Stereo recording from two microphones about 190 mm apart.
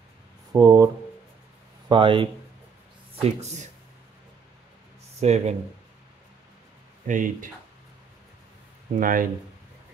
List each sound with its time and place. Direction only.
0.5 s speech: 20° right (ahead or behind)
1.9 s speech: 25° right (ahead or behind)
5.2 s speech: 35° right (ahead or behind)
7.1 s speech: 45° right (ahead or behind)
8.9 s speech: 45° right (ahead or behind)